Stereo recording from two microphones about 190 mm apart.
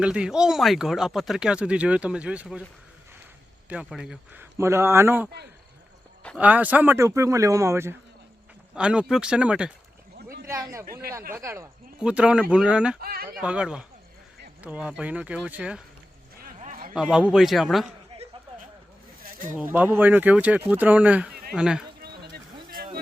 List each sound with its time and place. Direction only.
0.0 s speech: 5° right (ahead or behind)
3.7 s a man's voice: 5° right (ahead or behind)
13.0 s speech: 50° right (ahead or behind)
13.4 s speech: 5° right (ahead or behind)
16.6 s a sound: 45° right (ahead or behind)
16.9 s speech: 5° right (ahead or behind)
18.1 s a sound: 30° right (ahead or behind)
19.5 s speech: 10° right (ahead or behind)
22.0 s a sound: 50° right (ahead or behind)